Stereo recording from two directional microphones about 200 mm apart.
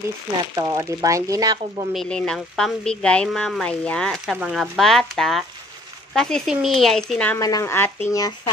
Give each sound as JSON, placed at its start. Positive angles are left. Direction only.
{"t": 0.6, "sound": "speech", "side_deg": -15}
{"t": 2.0, "sound": "speech", "side_deg": 5}